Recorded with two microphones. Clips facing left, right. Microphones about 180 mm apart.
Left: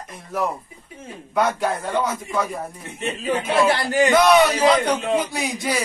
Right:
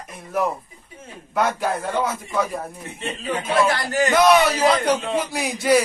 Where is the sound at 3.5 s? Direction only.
10° left (ahead or behind).